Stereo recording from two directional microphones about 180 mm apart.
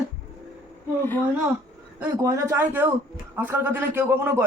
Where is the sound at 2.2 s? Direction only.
15° right (ahead or behind).